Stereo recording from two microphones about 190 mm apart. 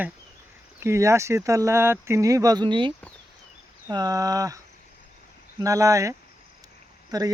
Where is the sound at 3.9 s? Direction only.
20° right (ahead or behind).